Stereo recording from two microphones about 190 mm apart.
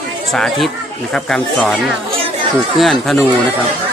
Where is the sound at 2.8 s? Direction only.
Centre (ahead or behind).